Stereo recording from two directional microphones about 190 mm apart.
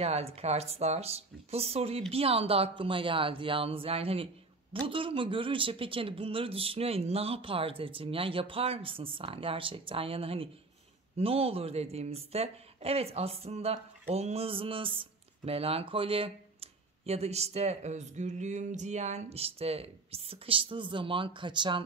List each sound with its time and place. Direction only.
0.0 s speech: 30° right (ahead or behind)